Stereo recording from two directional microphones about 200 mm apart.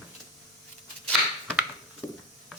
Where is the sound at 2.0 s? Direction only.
15° left (ahead or behind).